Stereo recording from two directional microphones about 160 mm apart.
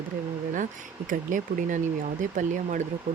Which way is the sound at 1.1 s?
55° right (ahead or behind).